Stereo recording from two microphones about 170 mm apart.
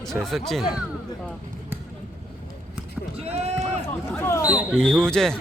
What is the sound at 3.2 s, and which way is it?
Speech, 40° right (ahead or behind).